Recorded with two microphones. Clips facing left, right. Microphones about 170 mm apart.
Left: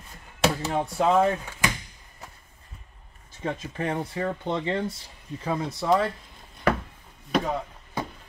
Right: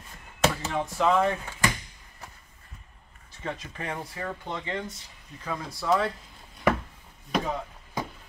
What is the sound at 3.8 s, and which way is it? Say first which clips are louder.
Speech: left 6 dB; 20° left (ahead or behind).